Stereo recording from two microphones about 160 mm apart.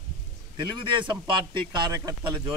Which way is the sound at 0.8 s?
30° right (ahead or behind).